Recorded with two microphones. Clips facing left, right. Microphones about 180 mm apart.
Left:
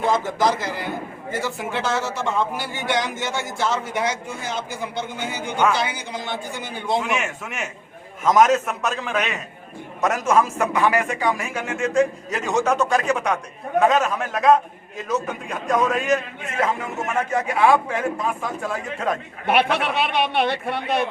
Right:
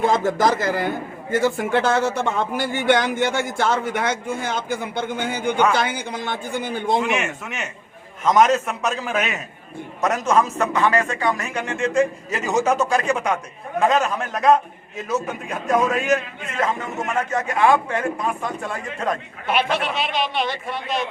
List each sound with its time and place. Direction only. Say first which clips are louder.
0.3 s a man's voice: right 3 dB; 50° right (ahead or behind)
7.0 s a man's voice: right 2 dB; centre (ahead or behind)
17.3 s a man's voice: even; 10° left (ahead or behind)
19.5 s a man's voice: left 2 dB; 60° left (ahead or behind)